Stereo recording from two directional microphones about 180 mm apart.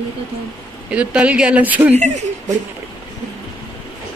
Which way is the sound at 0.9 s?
5° right (ahead or behind).